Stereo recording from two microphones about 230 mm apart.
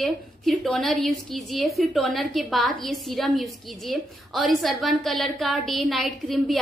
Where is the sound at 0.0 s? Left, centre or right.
Centre.